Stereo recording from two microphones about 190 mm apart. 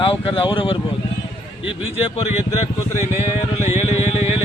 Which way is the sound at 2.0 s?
30° left (ahead or behind).